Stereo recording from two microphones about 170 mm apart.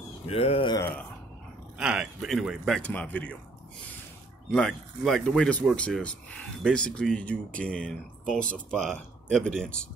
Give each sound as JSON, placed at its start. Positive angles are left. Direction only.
{"t": 0.3, "sound": "speech", "side_deg": 35}
{"t": 0.7, "sound": "speech", "side_deg": 10}
{"t": 1.8, "sound": "speech", "side_deg": -5}
{"t": 4.5, "sound": "speech", "side_deg": 5}